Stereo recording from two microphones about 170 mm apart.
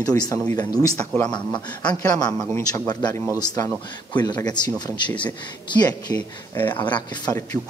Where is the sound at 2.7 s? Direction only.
20° left (ahead or behind).